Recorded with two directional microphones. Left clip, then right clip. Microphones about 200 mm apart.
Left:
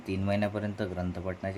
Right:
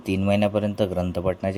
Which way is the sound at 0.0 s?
35° right (ahead or behind).